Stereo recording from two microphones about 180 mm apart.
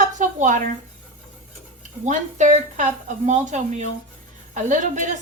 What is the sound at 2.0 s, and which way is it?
A woman's voice, 45° right (ahead or behind).